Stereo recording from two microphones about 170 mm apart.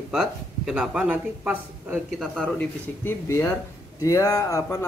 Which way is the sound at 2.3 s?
10° left (ahead or behind).